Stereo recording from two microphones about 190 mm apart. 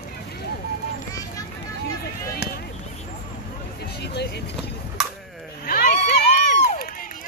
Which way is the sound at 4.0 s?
60° left (ahead or behind).